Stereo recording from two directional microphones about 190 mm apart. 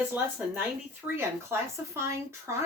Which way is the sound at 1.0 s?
15° right (ahead or behind).